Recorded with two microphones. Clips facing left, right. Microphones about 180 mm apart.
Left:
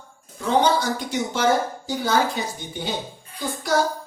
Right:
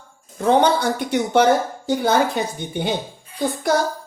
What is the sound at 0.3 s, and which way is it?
A woman's voice, 60° right (ahead or behind).